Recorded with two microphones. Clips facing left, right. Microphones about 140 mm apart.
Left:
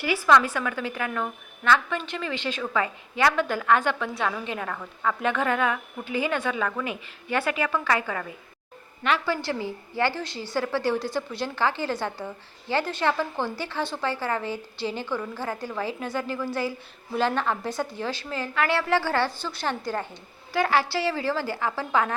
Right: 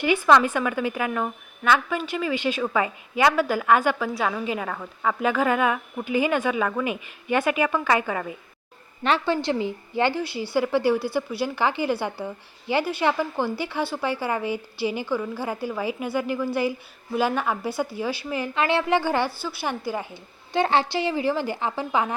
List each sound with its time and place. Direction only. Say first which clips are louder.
0.3 s a woman's voice: right 1 dB; 20° right (ahead or behind)
20.5 s a woman's voice: right 2 dB; 25° right (ahead or behind)